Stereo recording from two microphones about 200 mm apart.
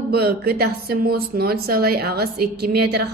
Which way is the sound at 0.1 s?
50° right (ahead or behind).